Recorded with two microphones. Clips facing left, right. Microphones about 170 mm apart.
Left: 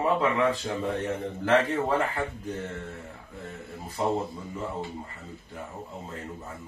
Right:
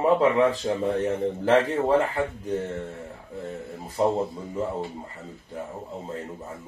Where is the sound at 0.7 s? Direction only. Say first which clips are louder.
Right 5 dB; 30° right (ahead or behind).